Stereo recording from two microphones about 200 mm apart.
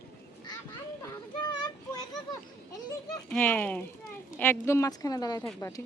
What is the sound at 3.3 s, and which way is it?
Speech, 5° left (ahead or behind).